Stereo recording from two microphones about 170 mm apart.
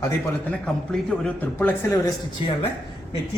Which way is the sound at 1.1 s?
10° left (ahead or behind).